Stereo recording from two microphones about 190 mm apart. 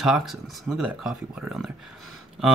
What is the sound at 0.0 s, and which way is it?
Speech, centre (ahead or behind).